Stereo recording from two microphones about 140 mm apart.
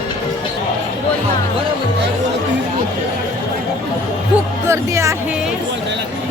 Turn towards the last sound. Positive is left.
turn(degrees=-20)  # may be behind; listen again after turning